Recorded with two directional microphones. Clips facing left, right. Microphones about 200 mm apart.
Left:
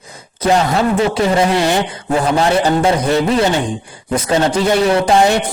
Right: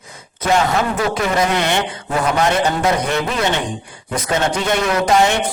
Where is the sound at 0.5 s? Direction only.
30° left (ahead or behind).